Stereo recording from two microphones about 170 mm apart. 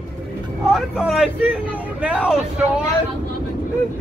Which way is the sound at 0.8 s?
5° right (ahead or behind).